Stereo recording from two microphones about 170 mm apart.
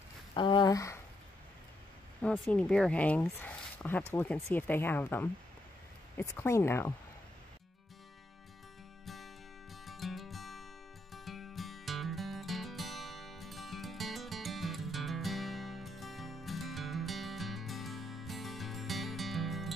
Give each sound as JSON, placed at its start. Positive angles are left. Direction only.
{"t": 0.3, "sound": "a sound", "side_deg": 25}
{"t": 2.2, "sound": "speech", "side_deg": 5}
{"t": 9.0, "sound": "music", "side_deg": 0}